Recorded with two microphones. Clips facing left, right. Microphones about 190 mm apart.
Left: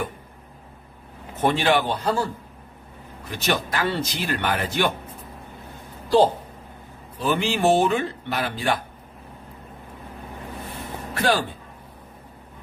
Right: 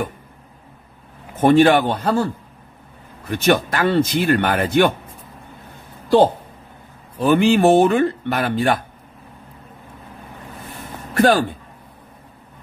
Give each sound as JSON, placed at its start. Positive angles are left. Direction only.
{"t": 1.4, "sound": "a man's voice", "side_deg": -50}
{"t": 3.3, "sound": "speech", "side_deg": -55}
{"t": 7.2, "sound": "speech", "side_deg": -55}
{"t": 11.1, "sound": "a man's voice", "side_deg": -50}